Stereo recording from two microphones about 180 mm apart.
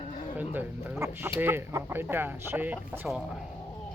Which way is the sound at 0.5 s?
10° right (ahead or behind).